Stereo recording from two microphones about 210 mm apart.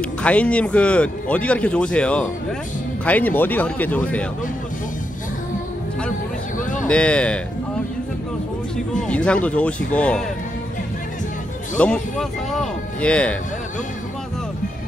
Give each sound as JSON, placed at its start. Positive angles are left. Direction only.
{"t": 0.0, "sound": "a man's voice", "side_deg": 5}
{"t": 6.6, "sound": "a sound", "side_deg": 40}
{"t": 6.9, "sound": "a man's voice", "side_deg": 5}
{"t": 9.0, "sound": "a man's voice", "side_deg": 5}
{"t": 11.8, "sound": "a man's voice", "side_deg": 5}